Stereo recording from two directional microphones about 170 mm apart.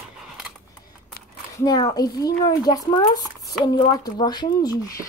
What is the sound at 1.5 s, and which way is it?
Speech, 25° left (ahead or behind).